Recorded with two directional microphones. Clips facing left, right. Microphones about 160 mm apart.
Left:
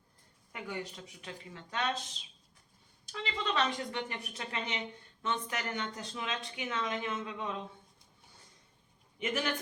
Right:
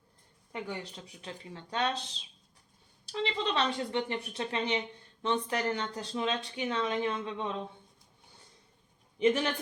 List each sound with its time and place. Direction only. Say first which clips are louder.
0.5 s speech: right 2 dB; 30° right (ahead or behind)
3.1 s speech: right 4 dB; 30° right (ahead or behind)
9.1 s speech: right 9 dB; 30° right (ahead or behind)